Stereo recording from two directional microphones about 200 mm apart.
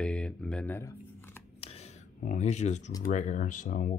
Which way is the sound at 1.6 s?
30° left (ahead or behind).